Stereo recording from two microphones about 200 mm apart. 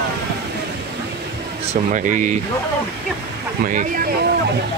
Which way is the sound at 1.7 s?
40° right (ahead or behind).